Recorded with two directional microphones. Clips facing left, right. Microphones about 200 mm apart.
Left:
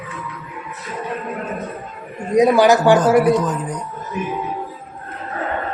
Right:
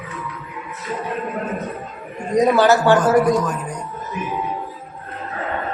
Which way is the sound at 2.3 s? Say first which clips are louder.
Left 2 dB; 10° left (ahead or behind).